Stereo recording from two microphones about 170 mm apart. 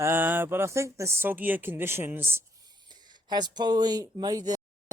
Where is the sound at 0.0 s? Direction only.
15° right (ahead or behind).